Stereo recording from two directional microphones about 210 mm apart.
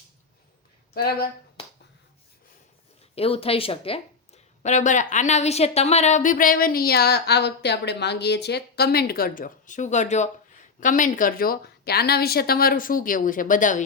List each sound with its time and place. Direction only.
3.2 s a woman's voice: 25° left (ahead or behind)